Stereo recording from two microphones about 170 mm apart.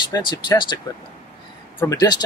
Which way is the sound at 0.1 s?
25° left (ahead or behind).